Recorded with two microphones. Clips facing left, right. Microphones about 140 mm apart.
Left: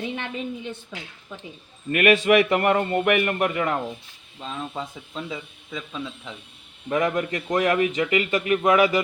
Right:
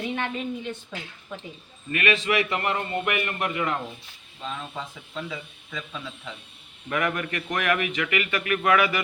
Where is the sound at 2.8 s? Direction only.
35° left (ahead or behind).